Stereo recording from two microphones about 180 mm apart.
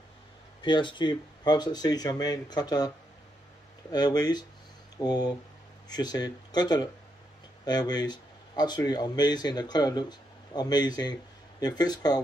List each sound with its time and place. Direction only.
0.6 s speech: 25° left (ahead or behind)
3.9 s speech: 20° left (ahead or behind)